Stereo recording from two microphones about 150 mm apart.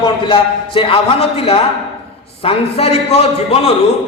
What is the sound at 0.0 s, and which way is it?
A man's voice, 35° left (ahead or behind).